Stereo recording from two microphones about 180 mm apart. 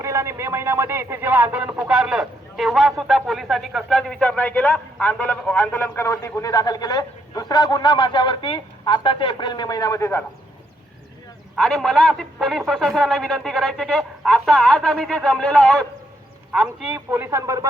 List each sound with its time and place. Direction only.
0.0 s speech: 15° right (ahead or behind); by 10.2 s 15° left (ahead or behind)
11.5 s a man's voice: centre (ahead or behind); by 17.7 s 20° right (ahead or behind)